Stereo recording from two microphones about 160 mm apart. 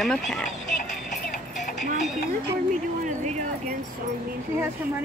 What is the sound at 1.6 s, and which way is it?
Clip-clop, 50° left (ahead or behind).